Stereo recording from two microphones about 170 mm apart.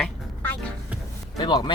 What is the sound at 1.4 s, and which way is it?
Speech, 25° left (ahead or behind).